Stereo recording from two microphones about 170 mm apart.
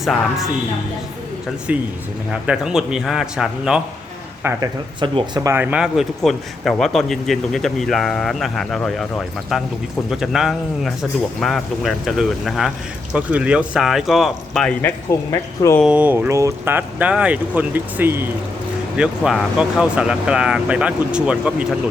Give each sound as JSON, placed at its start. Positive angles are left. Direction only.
{"t": 0.0, "sound": "a man's voice", "side_deg": 0}
{"t": 1.7, "sound": "a man's voice", "side_deg": -10}
{"t": 4.4, "sound": "speech", "side_deg": -25}
{"t": 5.5, "sound": "a man's voice", "side_deg": -10}
{"t": 15.8, "sound": "a man's voice", "side_deg": -5}